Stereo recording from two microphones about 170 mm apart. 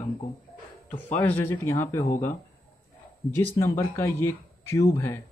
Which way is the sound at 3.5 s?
15° left (ahead or behind).